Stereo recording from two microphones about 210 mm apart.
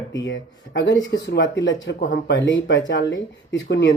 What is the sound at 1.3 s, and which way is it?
Speech, 60° left (ahead or behind).